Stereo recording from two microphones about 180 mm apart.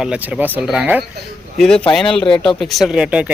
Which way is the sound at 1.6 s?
5° left (ahead or behind).